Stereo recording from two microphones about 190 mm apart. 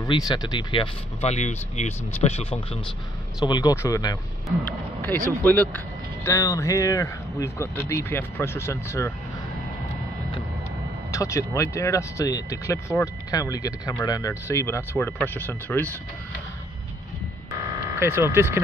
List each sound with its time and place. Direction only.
0.3 s speech: 25° left (ahead or behind)
3.3 s speech: 20° left (ahead or behind)
5.4 s speech: 10° left (ahead or behind)
11.1 s speech: 15° left (ahead or behind)
17.5 s buzzer: 15° right (ahead or behind)